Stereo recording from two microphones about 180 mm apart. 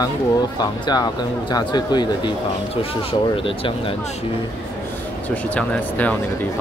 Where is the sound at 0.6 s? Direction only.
25° left (ahead or behind).